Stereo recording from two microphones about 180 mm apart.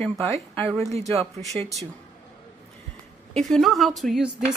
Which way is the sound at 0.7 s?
35° right (ahead or behind).